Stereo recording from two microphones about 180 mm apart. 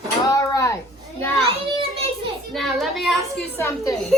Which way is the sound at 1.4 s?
30° right (ahead or behind).